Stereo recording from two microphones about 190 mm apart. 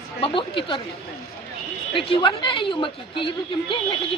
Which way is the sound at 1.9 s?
25° left (ahead or behind).